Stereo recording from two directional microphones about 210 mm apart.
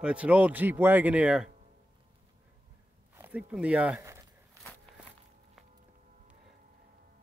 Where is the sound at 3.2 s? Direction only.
5° right (ahead or behind).